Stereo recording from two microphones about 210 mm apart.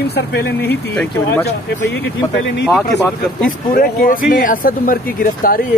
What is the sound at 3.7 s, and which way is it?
Speech, 40° left (ahead or behind).